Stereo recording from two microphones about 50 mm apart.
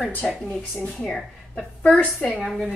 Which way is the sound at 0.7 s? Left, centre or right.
Centre.